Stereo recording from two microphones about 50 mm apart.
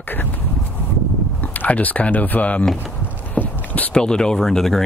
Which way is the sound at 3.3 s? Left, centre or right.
Left.